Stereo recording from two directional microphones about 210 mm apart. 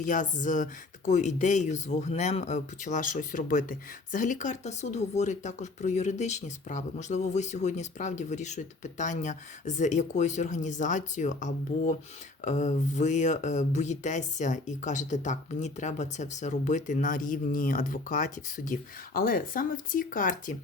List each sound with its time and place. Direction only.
0.0 s speech: 40° left (ahead or behind)